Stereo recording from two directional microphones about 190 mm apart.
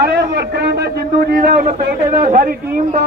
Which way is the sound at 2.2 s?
45° right (ahead or behind).